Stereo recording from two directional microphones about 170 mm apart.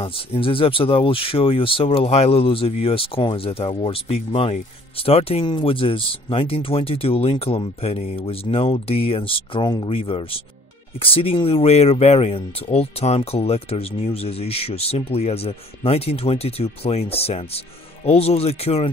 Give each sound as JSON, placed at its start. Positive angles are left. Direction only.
{"t": 0.0, "sound": "speech", "side_deg": 30}